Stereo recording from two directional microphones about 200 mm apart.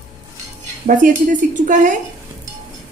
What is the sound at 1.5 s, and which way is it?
Speech, 40° right (ahead or behind).